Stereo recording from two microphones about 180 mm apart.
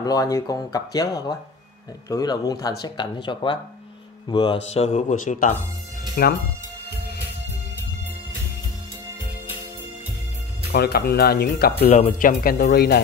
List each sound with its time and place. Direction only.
0.0 s speech: 20° left (ahead or behind)
4.7 s speech: 40° left (ahead or behind)
6.2 s speech: 55° left (ahead or behind)
10.7 s speech: 60° left (ahead or behind)
11.9 s speech: 40° left (ahead or behind); by 13.0 s 60° left (ahead or behind)